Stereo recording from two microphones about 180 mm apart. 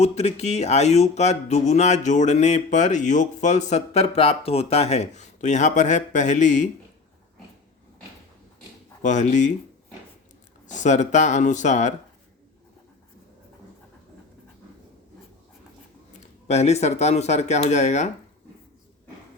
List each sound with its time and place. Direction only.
0.0 s speech: 35° left (ahead or behind)
9.0 s speech: 45° left (ahead or behind)
10.7 s speech: 40° left (ahead or behind)
16.5 s speech: 35° left (ahead or behind)